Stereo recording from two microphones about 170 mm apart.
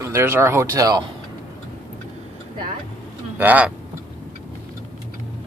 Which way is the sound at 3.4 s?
10° right (ahead or behind).